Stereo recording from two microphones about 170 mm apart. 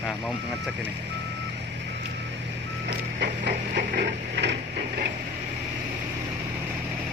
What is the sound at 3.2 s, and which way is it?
Printer, 90° right.